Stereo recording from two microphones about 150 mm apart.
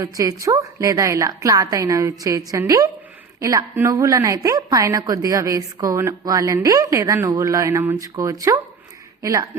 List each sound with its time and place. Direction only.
0.0 s a woman's voice: 20° right (ahead or behind)